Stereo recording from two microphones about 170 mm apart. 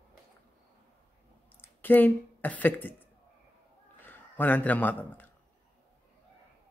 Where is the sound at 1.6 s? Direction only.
10° left (ahead or behind).